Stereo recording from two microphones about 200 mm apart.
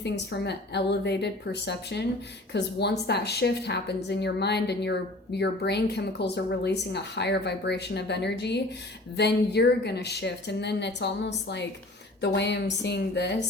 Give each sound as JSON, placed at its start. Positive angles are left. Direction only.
{"t": 0.0, "sound": "a woman's voice", "side_deg": 55}